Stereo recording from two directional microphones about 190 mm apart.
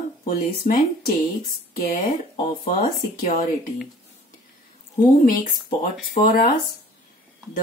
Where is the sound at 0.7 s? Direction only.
55° left (ahead or behind).